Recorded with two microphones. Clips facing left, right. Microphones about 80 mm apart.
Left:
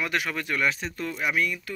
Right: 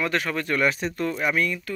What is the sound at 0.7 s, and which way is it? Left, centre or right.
Speech, centre.